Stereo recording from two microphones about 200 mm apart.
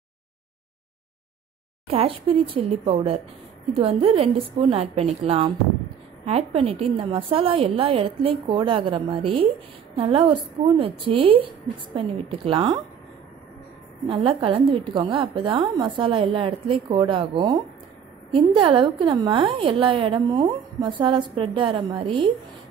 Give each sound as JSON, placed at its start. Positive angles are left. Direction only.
{"t": 1.9, "sound": "a woman's voice", "side_deg": -30}
{"t": 14.0, "sound": "a woman's voice", "side_deg": -25}